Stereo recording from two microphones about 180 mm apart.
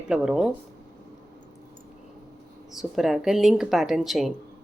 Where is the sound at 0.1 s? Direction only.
5° right (ahead or behind).